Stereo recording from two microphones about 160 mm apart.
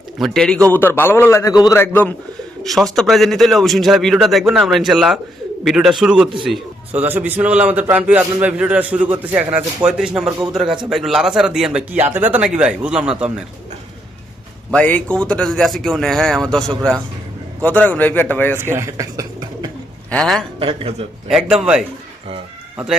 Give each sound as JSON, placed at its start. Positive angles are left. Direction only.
{"t": 0.2, "sound": "a man's voice", "side_deg": 5}
{"t": 2.6, "sound": "a man's voice", "side_deg": 0}
{"t": 14.7, "sound": "a man's voice", "side_deg": 10}
{"t": 18.5, "sound": "speech", "side_deg": -15}
{"t": 20.1, "sound": "a man's voice", "side_deg": 5}
{"t": 20.6, "sound": "speech", "side_deg": -35}
{"t": 21.2, "sound": "speech", "side_deg": 0}